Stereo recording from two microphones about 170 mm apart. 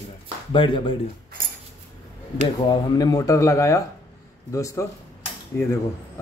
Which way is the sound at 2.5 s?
25° left (ahead or behind).